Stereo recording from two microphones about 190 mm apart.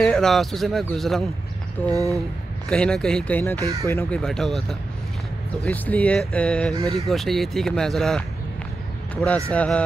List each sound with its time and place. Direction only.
0.0 s speech: 5° left (ahead or behind)
1.9 s speech: 15° right (ahead or behind)
2.7 s speech: 5° left (ahead or behind)
4.2 s speech: centre (ahead or behind)